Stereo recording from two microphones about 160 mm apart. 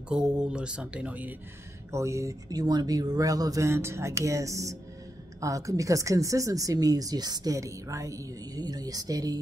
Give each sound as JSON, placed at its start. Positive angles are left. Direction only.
{"t": 0.1, "sound": "speech", "side_deg": -5}